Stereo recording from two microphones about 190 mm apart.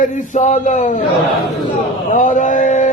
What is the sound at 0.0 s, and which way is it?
Speech, 40° left (ahead or behind).